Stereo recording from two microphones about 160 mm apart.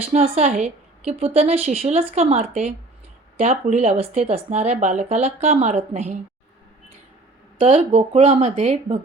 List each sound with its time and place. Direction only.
0.1 s speech: 45° right (ahead or behind)
7.6 s speech: 45° right (ahead or behind)